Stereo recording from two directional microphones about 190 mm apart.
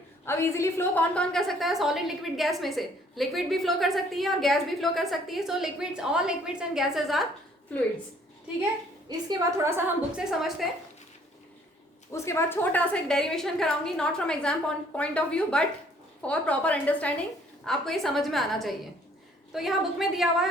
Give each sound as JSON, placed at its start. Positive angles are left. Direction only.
{"t": 0.3, "sound": "a woman's voice", "side_deg": 15}
{"t": 9.1, "sound": "a woman's voice", "side_deg": -20}
{"t": 12.1, "sound": "a woman's voice", "side_deg": 15}